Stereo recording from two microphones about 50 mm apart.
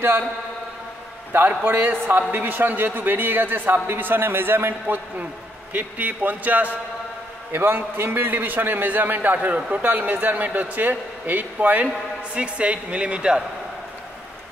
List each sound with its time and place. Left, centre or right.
1.6 s a man's voice: right
7.5 s a man's voice: right
12.4 s speech: right